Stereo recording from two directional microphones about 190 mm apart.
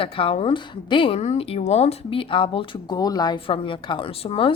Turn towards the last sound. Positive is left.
turn(degrees=30)  # may be behind; listen again after turning